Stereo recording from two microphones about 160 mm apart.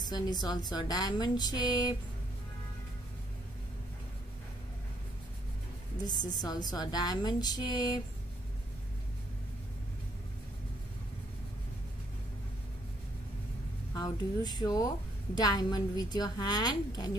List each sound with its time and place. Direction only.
0.0 s a woman's voice: 25° left (ahead or behind)
5.9 s a woman's voice: 25° left (ahead or behind)
13.9 s a woman's voice: 25° left (ahead or behind)